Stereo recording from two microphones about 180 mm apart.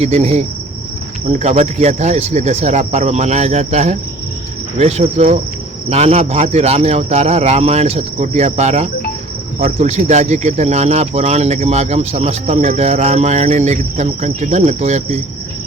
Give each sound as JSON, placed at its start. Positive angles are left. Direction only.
{"t": 0.0, "sound": "speech", "side_deg": -35}